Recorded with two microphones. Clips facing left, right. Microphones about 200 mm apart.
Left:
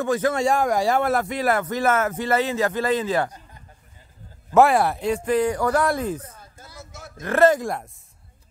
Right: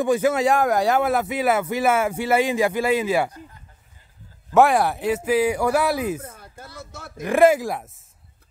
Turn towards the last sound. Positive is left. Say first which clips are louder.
# right 1 dB
turn(degrees=-5)  # may be behind; listen again after turning